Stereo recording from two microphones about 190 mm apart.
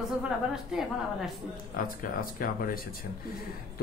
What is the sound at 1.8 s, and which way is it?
Speech, 50° left (ahead or behind).